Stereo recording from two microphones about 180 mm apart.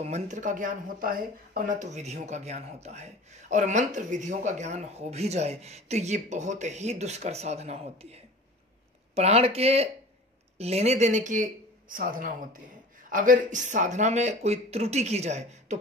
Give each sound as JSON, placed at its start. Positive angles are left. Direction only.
{"t": 0.0, "sound": "speech", "side_deg": -40}